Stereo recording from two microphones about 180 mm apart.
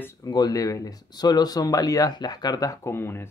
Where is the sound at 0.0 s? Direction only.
20° left (ahead or behind).